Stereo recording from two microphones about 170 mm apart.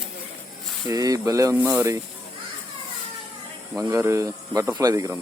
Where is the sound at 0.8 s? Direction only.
20° right (ahead or behind).